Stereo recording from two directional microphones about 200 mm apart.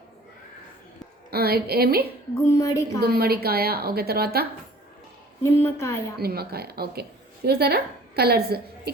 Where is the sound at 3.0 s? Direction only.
50° right (ahead or behind).